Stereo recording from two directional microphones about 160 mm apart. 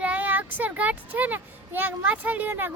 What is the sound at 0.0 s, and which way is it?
Speech, 10° right (ahead or behind).